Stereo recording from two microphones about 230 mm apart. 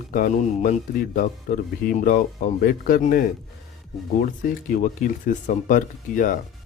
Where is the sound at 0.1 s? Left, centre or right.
Left.